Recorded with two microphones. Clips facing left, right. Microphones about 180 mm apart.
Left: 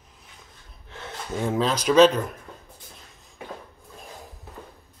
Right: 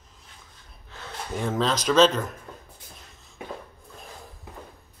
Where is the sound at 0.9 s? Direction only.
25° left (ahead or behind).